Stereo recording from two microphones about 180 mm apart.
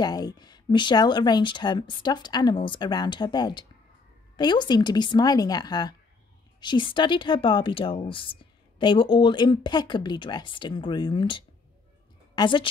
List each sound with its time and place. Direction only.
0.0 s a woman's voice: 20° left (ahead or behind)